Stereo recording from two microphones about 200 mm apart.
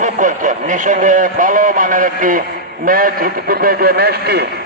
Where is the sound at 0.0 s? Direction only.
40° right (ahead or behind).